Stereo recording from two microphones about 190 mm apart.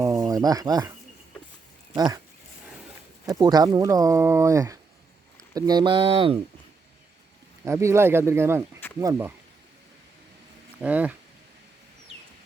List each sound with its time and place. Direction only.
0.0 s a sound: 20° right (ahead or behind)
1.9 s speech: 20° right (ahead or behind)
3.2 s speech: 20° right (ahead or behind)
7.6 s speech: 15° right (ahead or behind)
10.8 s speech: 5° right (ahead or behind)